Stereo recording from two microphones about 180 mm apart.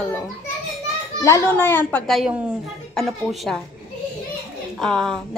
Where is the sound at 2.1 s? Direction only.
5° right (ahead or behind).